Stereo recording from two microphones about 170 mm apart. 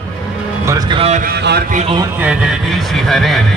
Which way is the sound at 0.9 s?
35° right (ahead or behind).